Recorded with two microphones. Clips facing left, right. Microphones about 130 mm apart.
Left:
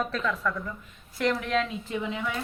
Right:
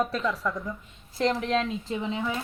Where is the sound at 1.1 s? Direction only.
30° right (ahead or behind).